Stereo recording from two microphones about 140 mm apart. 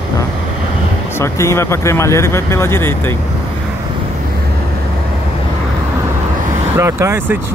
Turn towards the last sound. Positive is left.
turn(degrees=-20)  # may be behind; listen again after turning